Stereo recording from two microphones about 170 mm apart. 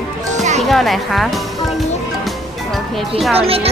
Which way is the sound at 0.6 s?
Centre (ahead or behind).